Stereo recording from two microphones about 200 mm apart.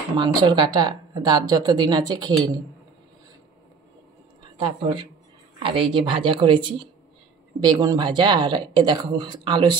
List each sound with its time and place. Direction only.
0.2 s a woman's voice: 20° right (ahead or behind)
4.6 s a woman's voice: 25° right (ahead or behind)